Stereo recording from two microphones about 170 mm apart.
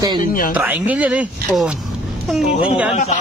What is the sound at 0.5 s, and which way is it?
Speech, 10° right (ahead or behind).